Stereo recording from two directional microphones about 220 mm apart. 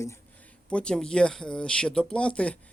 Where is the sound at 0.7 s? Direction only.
5° left (ahead or behind).